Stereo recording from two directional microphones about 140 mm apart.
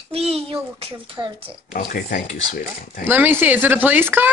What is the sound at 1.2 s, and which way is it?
Speech, 20° right (ahead or behind).